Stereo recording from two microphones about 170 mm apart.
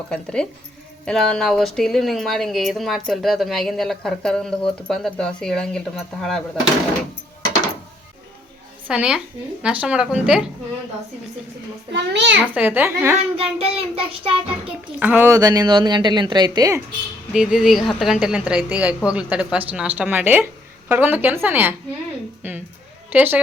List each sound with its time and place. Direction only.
0.1 s speech: 5° left (ahead or behind)
8.9 s speech: 5° right (ahead or behind)
11.9 s a child's voice: 90° right
12.5 s speech: 10° right (ahead or behind)
13.1 s child singing: 35° right (ahead or behind)
14.9 s a woman's voice: 10° right (ahead or behind)
17.3 s speech: 5° right (ahead or behind)
22.4 s a sound: 10° right (ahead or behind)
23.1 s speech: 10° right (ahead or behind)